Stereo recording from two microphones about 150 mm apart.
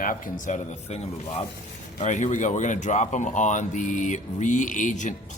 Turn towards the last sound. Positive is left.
turn(degrees=55)  # may be behind; listen again after turning